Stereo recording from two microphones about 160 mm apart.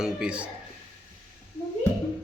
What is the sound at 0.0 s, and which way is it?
Speech, 5° right (ahead or behind).